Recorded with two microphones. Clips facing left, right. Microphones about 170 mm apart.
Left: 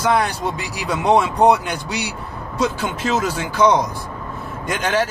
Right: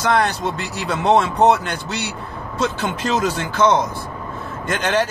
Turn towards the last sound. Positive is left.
turn(degrees=10)  # may be behind; listen again after turning